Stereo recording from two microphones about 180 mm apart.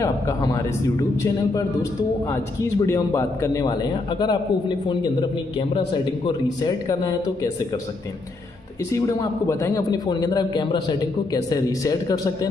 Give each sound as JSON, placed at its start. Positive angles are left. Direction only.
{"t": 0.0, "sound": "a man's voice", "side_deg": 20}
{"t": 6.2, "sound": "a man's voice", "side_deg": 20}
{"t": 8.9, "sound": "a man's voice", "side_deg": 15}